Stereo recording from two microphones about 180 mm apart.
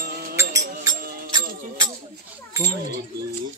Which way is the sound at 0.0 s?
55° right (ahead or behind).